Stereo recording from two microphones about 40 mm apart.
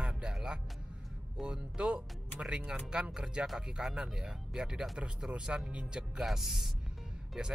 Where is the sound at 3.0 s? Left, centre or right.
Centre.